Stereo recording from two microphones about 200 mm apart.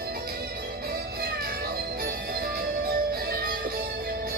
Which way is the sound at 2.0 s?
50° right (ahead or behind).